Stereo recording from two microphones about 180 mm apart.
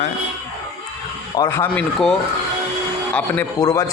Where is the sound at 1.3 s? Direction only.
15° left (ahead or behind).